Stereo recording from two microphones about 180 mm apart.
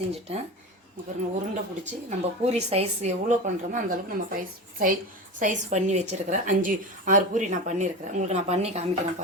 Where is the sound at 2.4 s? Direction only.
35° right (ahead or behind).